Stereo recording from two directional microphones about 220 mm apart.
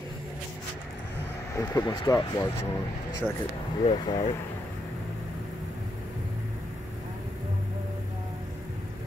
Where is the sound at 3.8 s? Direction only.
20° left (ahead or behind).